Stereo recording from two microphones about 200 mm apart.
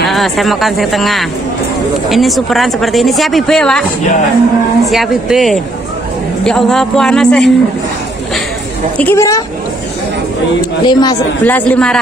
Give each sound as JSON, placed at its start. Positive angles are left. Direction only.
{"t": 0.0, "sound": "speech", "side_deg": 0}
{"t": 4.8, "sound": "speech", "side_deg": 0}
{"t": 8.9, "sound": "speech", "side_deg": 10}
{"t": 10.9, "sound": "speech", "side_deg": 20}
{"t": 11.4, "sound": "speech", "side_deg": 10}